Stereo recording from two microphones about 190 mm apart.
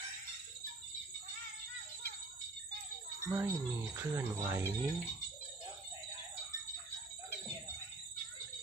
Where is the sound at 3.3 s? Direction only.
15° right (ahead or behind).